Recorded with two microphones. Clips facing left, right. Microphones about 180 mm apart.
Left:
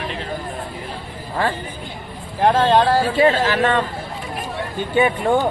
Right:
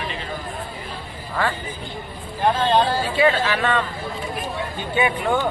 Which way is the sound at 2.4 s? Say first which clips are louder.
Left 4 dB; 90° left.